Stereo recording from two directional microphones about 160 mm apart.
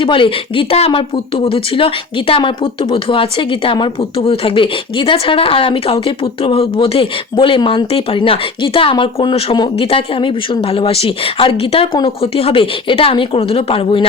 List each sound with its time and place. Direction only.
0.0 s a woman's voice: 30° left (ahead or behind)